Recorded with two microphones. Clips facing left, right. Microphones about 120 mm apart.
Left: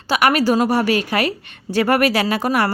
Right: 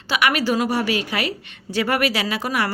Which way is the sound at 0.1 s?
40° left (ahead or behind).